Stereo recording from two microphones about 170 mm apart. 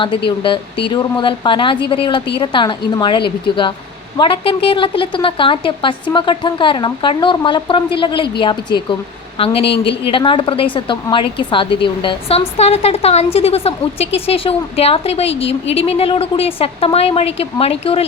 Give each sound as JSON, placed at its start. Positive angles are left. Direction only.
{"t": 0.3, "sound": "a woman's voice", "side_deg": 30}